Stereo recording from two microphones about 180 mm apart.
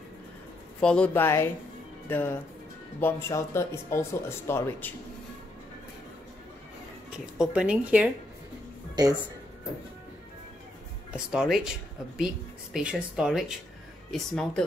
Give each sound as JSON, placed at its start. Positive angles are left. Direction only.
{"t": 0.7, "sound": "speech", "side_deg": 5}
{"t": 7.3, "sound": "speech", "side_deg": -5}
{"t": 11.1, "sound": "speech", "side_deg": -5}
{"t": 12.7, "sound": "speech", "side_deg": -5}